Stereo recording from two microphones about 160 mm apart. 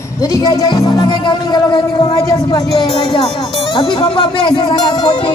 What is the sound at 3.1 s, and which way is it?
Speech, 35° left (ahead or behind).